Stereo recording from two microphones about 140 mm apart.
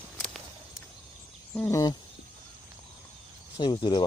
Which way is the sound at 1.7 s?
25° left (ahead or behind).